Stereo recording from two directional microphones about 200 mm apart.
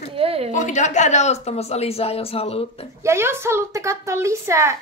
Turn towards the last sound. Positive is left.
turn(degrees=-15)  # may be behind; listen again after turning